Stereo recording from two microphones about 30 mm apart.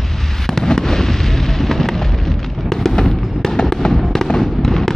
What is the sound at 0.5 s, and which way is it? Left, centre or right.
Fireworks, centre.